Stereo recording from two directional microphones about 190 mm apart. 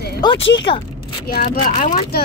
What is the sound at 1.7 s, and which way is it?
Speech, 35° left (ahead or behind).